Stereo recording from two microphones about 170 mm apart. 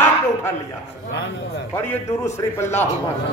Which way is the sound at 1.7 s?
15° left (ahead or behind).